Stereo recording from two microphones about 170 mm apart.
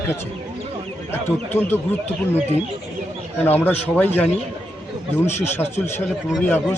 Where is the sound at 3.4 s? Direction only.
10° left (ahead or behind).